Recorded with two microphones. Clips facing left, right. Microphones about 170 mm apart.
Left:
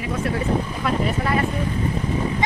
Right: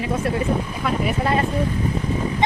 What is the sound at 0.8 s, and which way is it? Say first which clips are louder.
Speech: even; centre (ahead or behind).